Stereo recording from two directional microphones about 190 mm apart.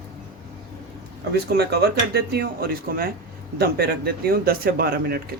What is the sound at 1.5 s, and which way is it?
A man's voice, 60° right (ahead or behind).